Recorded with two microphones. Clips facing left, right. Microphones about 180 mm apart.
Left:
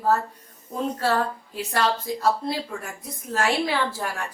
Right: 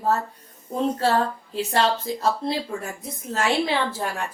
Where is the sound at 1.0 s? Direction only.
25° right (ahead or behind).